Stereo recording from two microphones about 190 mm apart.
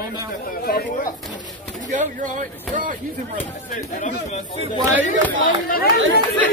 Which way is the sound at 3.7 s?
40° left (ahead or behind).